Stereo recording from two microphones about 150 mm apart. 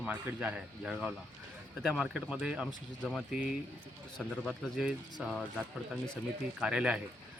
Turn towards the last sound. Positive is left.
turn(degrees=-5)  # may be behind; listen again after turning